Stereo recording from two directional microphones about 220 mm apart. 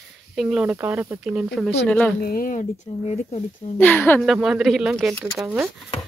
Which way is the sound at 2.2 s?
40° left (ahead or behind).